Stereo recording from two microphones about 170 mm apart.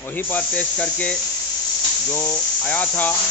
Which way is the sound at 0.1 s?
10° left (ahead or behind).